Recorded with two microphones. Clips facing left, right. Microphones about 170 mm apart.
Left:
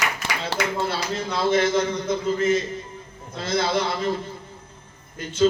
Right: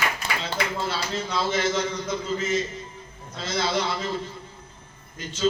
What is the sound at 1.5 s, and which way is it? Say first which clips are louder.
A man's voice: left 7 dB; 55° left (ahead or behind).